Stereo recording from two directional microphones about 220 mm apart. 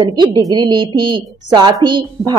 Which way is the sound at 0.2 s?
20° right (ahead or behind).